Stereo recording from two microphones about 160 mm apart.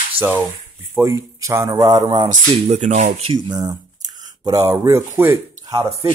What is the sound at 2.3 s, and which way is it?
Speech, 45° right (ahead or behind).